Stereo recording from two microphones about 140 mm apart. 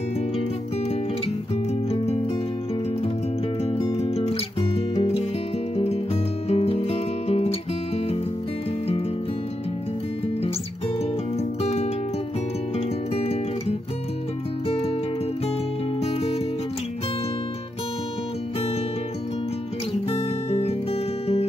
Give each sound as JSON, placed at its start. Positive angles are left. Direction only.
{"t": 1.9, "sound": "music", "side_deg": 45}
{"t": 3.6, "sound": "music", "side_deg": 50}
{"t": 6.5, "sound": "music", "side_deg": 45}
{"t": 11.3, "sound": "music", "side_deg": 50}
{"t": 16.0, "sound": "music", "side_deg": 45}
{"t": 20.1, "sound": "music", "side_deg": 45}